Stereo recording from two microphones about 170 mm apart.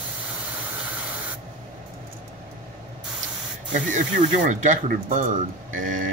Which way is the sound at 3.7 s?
45° right (ahead or behind).